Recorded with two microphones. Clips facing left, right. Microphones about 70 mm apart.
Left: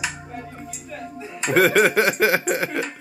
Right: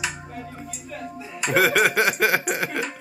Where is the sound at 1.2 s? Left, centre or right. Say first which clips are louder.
Left 1 dB; left.